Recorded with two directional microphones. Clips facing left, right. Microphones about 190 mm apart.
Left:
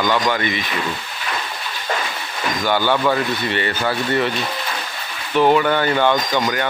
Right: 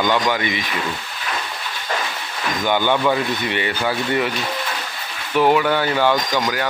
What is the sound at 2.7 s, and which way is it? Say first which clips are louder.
Speech: even; 15° right (ahead or behind).